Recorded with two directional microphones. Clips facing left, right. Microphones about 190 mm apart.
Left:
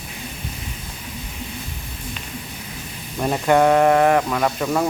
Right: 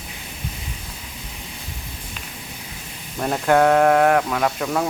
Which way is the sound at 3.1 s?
5° left (ahead or behind).